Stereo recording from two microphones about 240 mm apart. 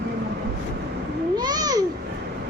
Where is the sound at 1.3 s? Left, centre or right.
Centre.